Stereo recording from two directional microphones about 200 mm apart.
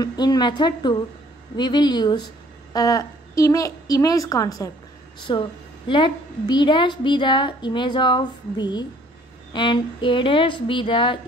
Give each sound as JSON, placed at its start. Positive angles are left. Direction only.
{"t": 0.0, "sound": "a woman's voice", "side_deg": 20}